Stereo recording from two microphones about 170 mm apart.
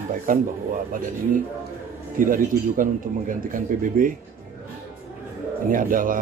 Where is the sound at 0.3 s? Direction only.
55° right (ahead or behind).